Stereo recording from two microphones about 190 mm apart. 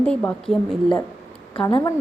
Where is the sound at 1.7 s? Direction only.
15° left (ahead or behind).